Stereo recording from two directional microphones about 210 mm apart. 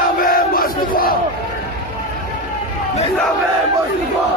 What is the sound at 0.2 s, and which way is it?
Crowd, 45° left (ahead or behind).